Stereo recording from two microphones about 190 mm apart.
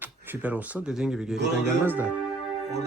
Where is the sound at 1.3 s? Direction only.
65° right (ahead or behind).